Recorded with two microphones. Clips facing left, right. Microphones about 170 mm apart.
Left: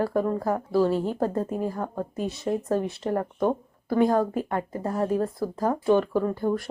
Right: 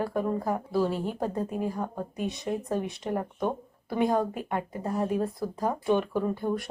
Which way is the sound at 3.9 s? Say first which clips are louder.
Left 4 dB; 20° right (ahead or behind).